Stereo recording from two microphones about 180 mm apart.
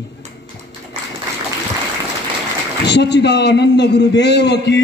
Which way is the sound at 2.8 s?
70° left (ahead or behind).